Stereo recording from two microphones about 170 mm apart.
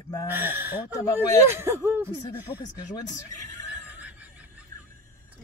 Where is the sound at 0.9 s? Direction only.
20° left (ahead or behind).